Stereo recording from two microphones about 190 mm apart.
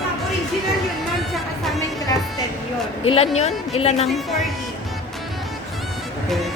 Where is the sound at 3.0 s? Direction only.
30° left (ahead or behind).